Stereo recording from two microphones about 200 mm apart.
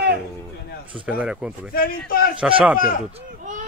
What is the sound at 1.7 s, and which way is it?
Speech, 45° left (ahead or behind).